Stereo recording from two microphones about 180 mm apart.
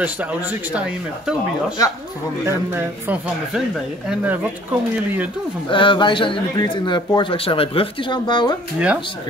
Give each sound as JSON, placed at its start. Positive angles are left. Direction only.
{"t": 0.0, "sound": "speech", "side_deg": -10}
{"t": 2.4, "sound": "speech", "side_deg": -10}
{"t": 5.7, "sound": "speech", "side_deg": 25}
{"t": 8.7, "sound": "speech", "side_deg": -5}